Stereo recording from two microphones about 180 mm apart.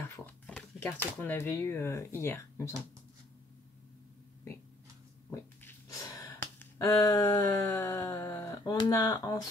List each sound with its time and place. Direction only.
0.5 s speech: 10° left (ahead or behind)
5.3 s a sound: 15° left (ahead or behind)
6.4 s finger snapping: 15° left (ahead or behind)